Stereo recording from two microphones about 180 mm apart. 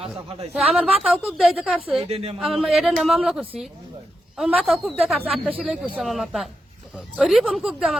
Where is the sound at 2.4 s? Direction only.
Centre (ahead or behind).